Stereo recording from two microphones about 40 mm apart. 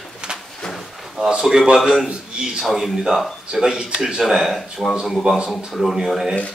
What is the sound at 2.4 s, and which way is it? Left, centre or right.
Speech, centre.